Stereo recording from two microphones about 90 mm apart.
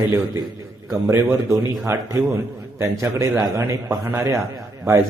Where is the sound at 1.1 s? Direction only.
30° right (ahead or behind).